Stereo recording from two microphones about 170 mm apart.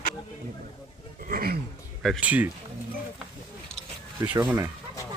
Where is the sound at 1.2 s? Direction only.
60° right (ahead or behind).